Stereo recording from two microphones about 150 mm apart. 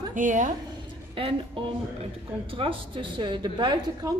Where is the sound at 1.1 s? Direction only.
35° right (ahead or behind).